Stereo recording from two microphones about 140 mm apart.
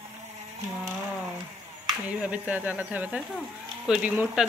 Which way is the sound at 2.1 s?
10° right (ahead or behind).